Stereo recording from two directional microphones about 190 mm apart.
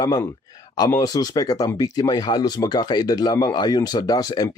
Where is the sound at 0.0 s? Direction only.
20° left (ahead or behind).